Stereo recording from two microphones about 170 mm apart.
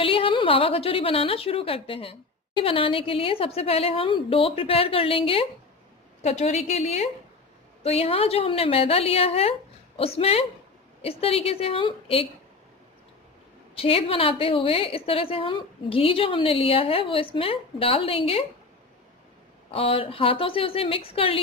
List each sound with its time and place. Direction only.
0.0 s a woman's voice: 30° left (ahead or behind)
13.7 s a woman's voice: 35° left (ahead or behind)
19.7 s a woman's voice: 35° left (ahead or behind)